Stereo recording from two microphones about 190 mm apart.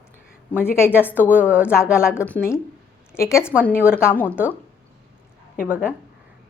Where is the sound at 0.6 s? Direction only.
10° left (ahead or behind).